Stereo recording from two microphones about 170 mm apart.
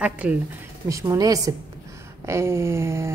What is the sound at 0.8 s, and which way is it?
A woman's voice, 20° right (ahead or behind).